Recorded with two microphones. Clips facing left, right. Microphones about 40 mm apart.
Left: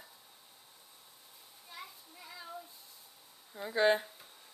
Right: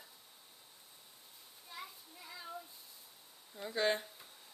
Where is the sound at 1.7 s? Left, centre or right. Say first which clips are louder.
Even; centre.